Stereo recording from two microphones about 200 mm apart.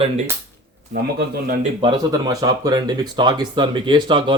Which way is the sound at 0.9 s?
50° right (ahead or behind).